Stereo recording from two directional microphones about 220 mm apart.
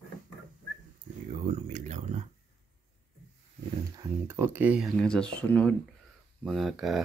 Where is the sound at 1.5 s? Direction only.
35° right (ahead or behind).